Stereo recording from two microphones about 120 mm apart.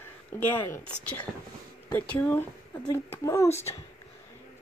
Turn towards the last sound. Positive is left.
turn(degrees=20)  # may be behind; listen again after turning